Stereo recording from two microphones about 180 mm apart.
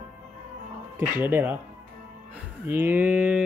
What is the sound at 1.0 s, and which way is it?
Speech, 10° right (ahead or behind).